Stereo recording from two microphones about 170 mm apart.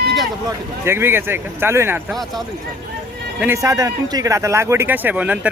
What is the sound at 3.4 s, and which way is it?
A man's voice, 15° right (ahead or behind).